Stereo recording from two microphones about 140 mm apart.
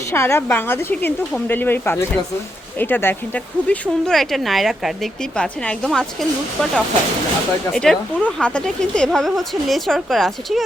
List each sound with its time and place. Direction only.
0.1 s speech: 20° left (ahead or behind); by 10.6 s centre (ahead or behind)